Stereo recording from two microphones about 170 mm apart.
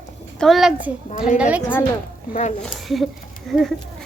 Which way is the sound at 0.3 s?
Centre (ahead or behind).